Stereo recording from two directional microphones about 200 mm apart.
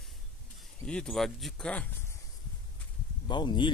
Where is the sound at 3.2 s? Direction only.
25° left (ahead or behind).